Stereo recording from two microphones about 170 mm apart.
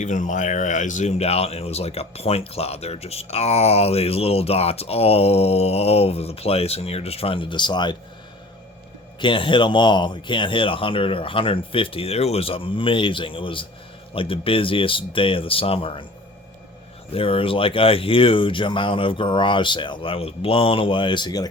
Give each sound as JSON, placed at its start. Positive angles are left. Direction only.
{"t": 0.0, "sound": "speech", "side_deg": 45}
{"t": 9.2, "sound": "speech", "side_deg": 30}
{"t": 17.1, "sound": "speech", "side_deg": 35}